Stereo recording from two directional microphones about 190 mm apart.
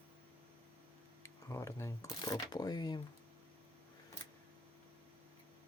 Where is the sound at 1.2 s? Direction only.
15° left (ahead or behind).